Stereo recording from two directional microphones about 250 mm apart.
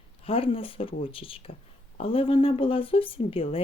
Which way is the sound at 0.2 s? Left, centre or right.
Left.